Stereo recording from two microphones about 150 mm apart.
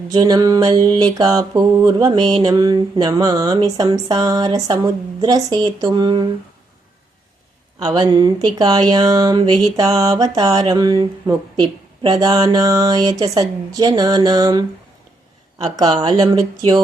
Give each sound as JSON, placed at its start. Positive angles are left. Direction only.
{"t": 0.1, "sound": "mantra", "side_deg": -25}
{"t": 7.9, "sound": "mantra", "side_deg": -25}
{"t": 15.6, "sound": "mantra", "side_deg": -25}